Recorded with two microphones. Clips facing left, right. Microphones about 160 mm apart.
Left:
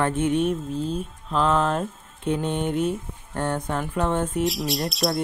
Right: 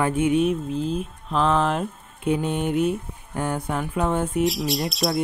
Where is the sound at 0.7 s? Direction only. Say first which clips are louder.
Right 2 dB; 30° left (ahead or behind).